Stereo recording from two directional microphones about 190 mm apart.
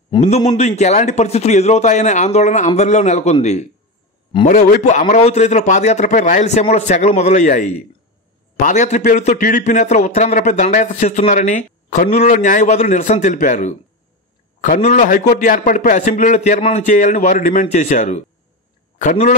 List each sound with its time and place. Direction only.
0.1 s a man's voice: 20° left (ahead or behind)
0.5 s a man's voice: 35° left (ahead or behind)